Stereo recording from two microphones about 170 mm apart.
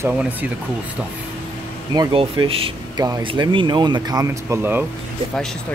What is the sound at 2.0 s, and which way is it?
Speech, 30° right (ahead or behind).